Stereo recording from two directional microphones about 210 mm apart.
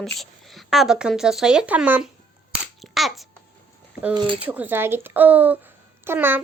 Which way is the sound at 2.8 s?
Centre (ahead or behind).